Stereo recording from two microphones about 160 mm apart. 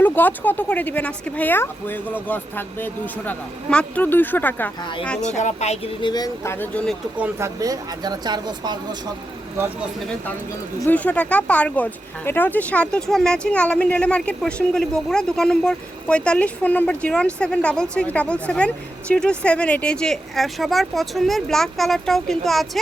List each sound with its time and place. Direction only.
0.0 s speech: 10° left (ahead or behind)
4.8 s speech: 30° left (ahead or behind)
5.4 s speech: 45° left (ahead or behind); by 6.8 s 15° left (ahead or behind)
7.2 s speech: 15° right (ahead or behind)
10.8 s speech: 10° left (ahead or behind)